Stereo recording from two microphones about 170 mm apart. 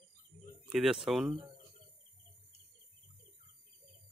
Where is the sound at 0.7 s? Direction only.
5° right (ahead or behind).